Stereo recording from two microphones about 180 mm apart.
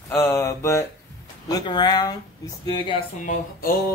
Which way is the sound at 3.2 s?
50° left (ahead or behind).